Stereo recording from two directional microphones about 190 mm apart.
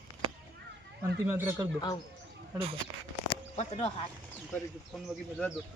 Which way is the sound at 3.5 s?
35° left (ahead or behind).